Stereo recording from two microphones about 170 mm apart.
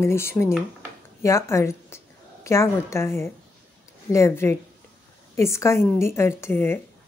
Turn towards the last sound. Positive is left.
turn(degrees=15)  # may be behind; listen again after turning